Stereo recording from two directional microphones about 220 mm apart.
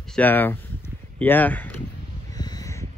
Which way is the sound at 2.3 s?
15° left (ahead or behind).